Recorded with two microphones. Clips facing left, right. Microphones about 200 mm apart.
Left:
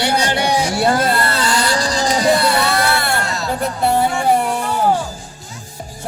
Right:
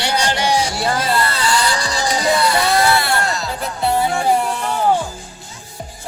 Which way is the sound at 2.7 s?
55° left (ahead or behind).